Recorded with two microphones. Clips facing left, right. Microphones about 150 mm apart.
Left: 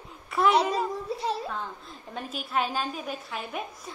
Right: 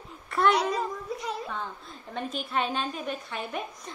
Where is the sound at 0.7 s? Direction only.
30° left (ahead or behind).